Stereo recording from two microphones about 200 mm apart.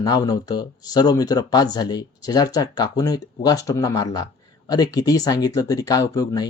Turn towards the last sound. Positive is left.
turn(degrees=20)  # may be behind; listen again after turning